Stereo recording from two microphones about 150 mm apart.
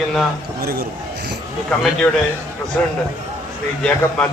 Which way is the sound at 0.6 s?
90° right.